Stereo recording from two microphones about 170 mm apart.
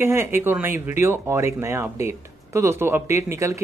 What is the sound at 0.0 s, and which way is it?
Speech, 15° right (ahead or behind).